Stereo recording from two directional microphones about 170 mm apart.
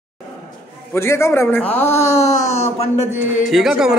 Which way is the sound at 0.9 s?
15° left (ahead or behind).